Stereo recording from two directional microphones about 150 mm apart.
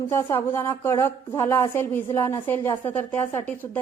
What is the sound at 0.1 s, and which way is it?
A woman's voice, 15° left (ahead or behind).